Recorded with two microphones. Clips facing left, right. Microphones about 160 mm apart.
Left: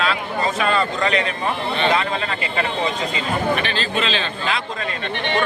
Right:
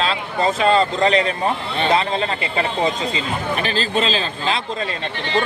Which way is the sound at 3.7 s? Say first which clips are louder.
Right 3 dB; 40° right (ahead or behind).